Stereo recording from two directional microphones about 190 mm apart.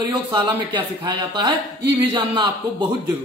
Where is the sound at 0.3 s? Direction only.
25° right (ahead or behind).